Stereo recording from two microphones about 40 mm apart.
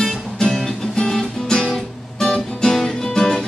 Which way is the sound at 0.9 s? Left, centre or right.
Centre.